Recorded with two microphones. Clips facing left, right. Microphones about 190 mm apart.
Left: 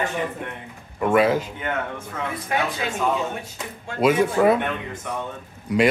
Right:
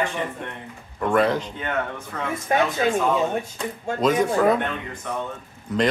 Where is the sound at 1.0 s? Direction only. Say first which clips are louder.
Left 2 dB; 10° left (ahead or behind).